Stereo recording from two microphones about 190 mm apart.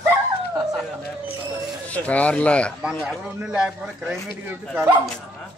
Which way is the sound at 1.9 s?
5° left (ahead or behind).